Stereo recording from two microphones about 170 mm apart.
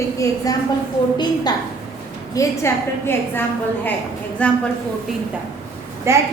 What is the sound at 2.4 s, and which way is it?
A woman's voice, 15° left (ahead or behind).